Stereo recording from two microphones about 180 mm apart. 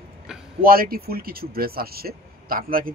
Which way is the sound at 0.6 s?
55° right (ahead or behind).